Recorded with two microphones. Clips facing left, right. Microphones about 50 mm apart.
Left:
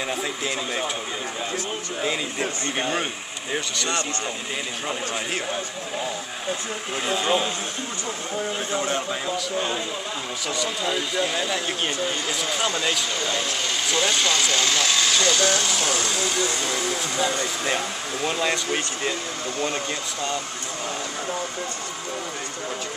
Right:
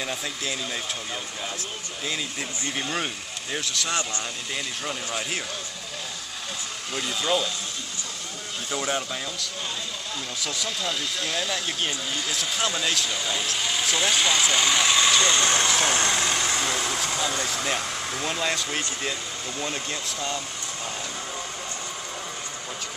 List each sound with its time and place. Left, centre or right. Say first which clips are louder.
0.0 s speech: left 4 dB; centre
3.5 s speech: left 2 dB; centre
7.0 s speech: left 3 dB; left
10.4 s speech: left 4 dB; centre; by 16.3 s right
18.3 s speech: left 3 dB; centre